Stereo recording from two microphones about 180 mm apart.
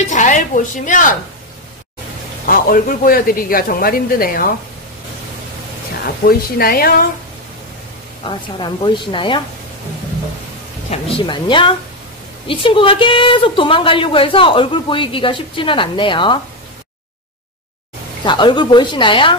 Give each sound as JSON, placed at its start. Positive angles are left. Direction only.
{"t": 0.1, "sound": "a woman's voice", "side_deg": 45}
{"t": 2.4, "sound": "a man's voice", "side_deg": 50}
{"t": 6.2, "sound": "a woman's voice", "side_deg": 55}
{"t": 8.3, "sound": "a woman's voice", "side_deg": 25}
{"t": 10.9, "sound": "a woman's voice", "side_deg": 30}
{"t": 18.2, "sound": "a woman's voice", "side_deg": 25}